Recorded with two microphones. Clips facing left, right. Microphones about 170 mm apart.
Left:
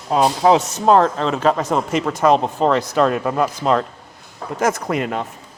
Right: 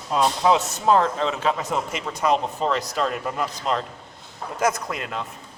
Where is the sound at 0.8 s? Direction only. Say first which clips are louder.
Left 5 dB; 85° left.